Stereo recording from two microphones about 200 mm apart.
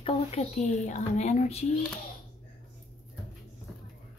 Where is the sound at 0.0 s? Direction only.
30° left (ahead or behind).